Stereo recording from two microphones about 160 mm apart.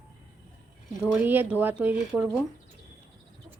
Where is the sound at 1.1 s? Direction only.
10° right (ahead or behind).